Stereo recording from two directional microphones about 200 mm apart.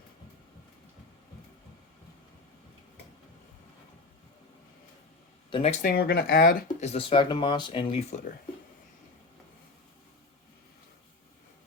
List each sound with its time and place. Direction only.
5.5 s speech: 25° left (ahead or behind)
5.8 s speech: 50° left (ahead or behind); by 8.2 s 30° left (ahead or behind)